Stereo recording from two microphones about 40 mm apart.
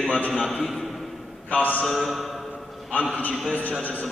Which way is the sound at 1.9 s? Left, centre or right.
Centre.